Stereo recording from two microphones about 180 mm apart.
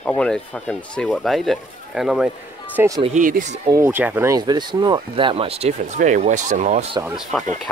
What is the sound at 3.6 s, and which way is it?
Speech, 15° right (ahead or behind).